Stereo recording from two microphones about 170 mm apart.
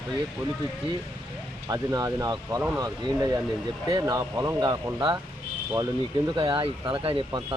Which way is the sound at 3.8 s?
20° right (ahead or behind).